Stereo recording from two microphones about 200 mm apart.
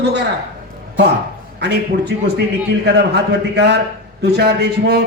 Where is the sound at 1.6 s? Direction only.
55° right (ahead or behind).